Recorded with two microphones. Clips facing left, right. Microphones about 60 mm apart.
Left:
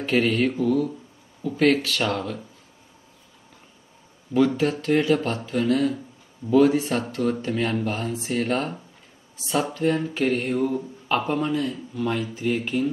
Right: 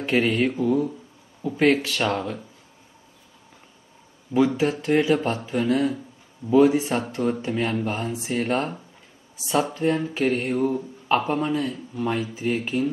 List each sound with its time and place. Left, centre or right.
0.0 s speech: centre
4.3 s speech: centre